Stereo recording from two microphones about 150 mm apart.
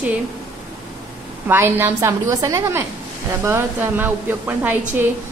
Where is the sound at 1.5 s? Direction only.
15° right (ahead or behind).